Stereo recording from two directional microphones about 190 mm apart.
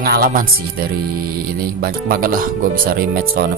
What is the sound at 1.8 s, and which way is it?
Speech, 50° right (ahead or behind).